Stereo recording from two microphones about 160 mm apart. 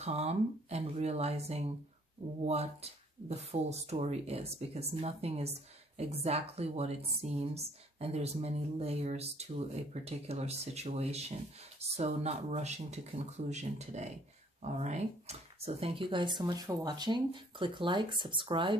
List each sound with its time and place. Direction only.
0.0 s speech: 40° right (ahead or behind)